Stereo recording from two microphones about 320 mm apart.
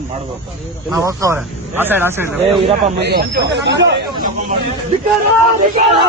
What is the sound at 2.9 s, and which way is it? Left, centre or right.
Speech, right.